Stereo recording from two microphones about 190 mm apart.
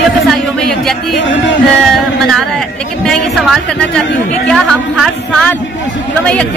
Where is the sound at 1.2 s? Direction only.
75° left (ahead or behind).